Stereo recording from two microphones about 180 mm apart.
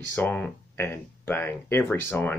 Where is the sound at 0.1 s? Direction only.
10° left (ahead or behind).